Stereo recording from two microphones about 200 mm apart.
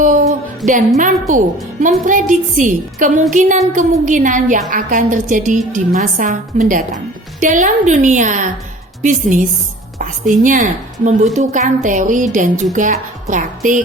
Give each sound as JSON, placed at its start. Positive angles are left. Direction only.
{"t": 0.0, "sound": "music", "side_deg": -40}
{"t": 0.9, "sound": "a woman's voice", "side_deg": -40}